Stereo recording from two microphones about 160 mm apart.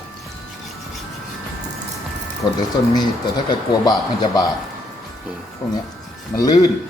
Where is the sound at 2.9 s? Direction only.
25° left (ahead or behind).